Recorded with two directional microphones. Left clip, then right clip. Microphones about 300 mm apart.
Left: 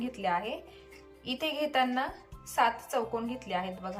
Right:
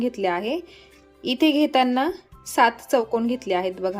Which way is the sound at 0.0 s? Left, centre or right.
Centre.